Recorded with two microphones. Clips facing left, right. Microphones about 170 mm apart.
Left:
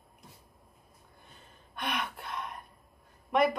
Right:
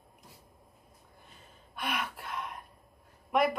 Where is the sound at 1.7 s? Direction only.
5° right (ahead or behind).